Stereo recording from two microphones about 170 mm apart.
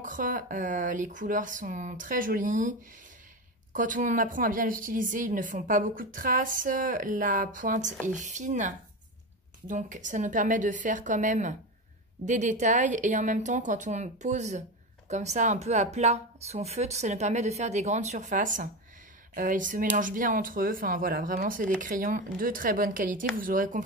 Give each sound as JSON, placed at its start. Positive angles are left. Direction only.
{"t": 0.0, "sound": "speech", "side_deg": -50}
{"t": 3.7, "sound": "speech", "side_deg": -50}